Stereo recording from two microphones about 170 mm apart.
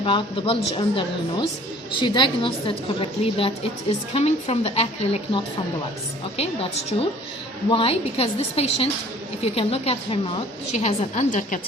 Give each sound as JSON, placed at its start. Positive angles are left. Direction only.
{"t": 0.0, "sound": "a woman's voice", "side_deg": 30}